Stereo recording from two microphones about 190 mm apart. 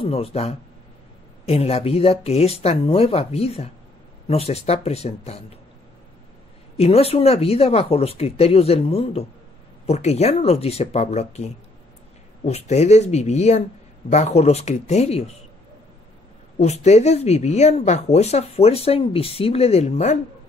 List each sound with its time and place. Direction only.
0.0 s speech: 30° left (ahead or behind)
6.8 s speech: 30° left (ahead or behind)
16.5 s speech: 35° left (ahead or behind)